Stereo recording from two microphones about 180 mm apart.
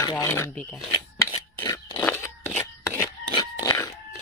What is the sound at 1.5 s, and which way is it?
Scissors, 20° left (ahead or behind).